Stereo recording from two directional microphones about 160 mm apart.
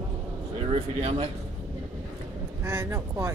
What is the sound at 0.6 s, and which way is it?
Speech, 40° right (ahead or behind).